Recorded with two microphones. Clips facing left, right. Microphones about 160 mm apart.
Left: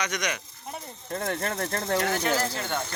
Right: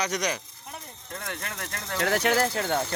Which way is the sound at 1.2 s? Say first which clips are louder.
Left 8 dB; 40° left (ahead or behind).